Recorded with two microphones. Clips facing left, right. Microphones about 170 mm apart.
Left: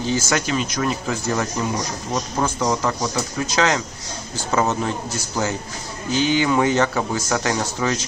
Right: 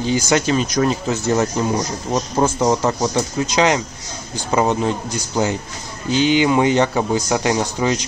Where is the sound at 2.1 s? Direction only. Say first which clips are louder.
Right 5 dB; 30° right (ahead or behind).